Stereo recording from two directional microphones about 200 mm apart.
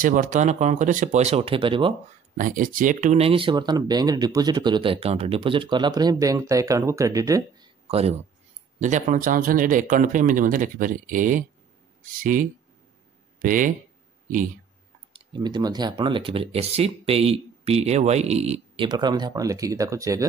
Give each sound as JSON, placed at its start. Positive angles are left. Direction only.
{"t": 0.0, "sound": "speech", "side_deg": -40}
{"t": 2.3, "sound": "speech", "side_deg": -40}
{"t": 7.9, "sound": "speech", "side_deg": -30}
{"t": 15.1, "sound": "speech", "side_deg": -20}